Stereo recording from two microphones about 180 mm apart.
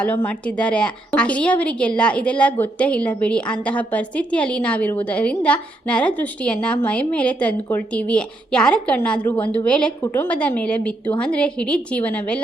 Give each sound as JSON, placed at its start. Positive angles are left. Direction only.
{"t": 0.3, "sound": "a woman's voice", "side_deg": 5}